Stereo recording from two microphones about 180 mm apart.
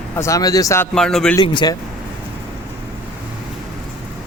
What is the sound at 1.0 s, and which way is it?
Speech, 5° left (ahead or behind).